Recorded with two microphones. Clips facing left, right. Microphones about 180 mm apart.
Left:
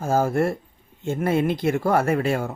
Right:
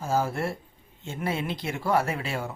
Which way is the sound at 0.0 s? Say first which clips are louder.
Left 6 dB; 50° left (ahead or behind).